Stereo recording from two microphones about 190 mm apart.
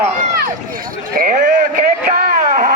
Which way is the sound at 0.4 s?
45° right (ahead or behind).